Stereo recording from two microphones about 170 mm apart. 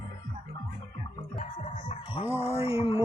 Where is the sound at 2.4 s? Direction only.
35° left (ahead or behind).